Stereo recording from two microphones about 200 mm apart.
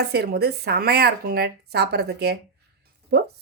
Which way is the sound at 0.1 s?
55° right (ahead or behind).